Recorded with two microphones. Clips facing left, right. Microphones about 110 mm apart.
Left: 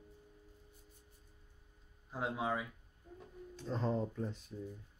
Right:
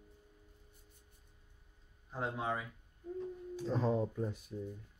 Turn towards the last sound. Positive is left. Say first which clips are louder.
# right 3 dB
turn(degrees=-10)  # may be behind; listen again after turning